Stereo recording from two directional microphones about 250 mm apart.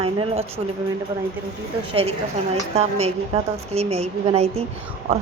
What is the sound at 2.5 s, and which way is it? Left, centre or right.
A woman's voice, right.